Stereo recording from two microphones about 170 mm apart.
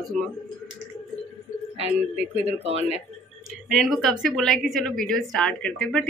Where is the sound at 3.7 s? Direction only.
Centre (ahead or behind).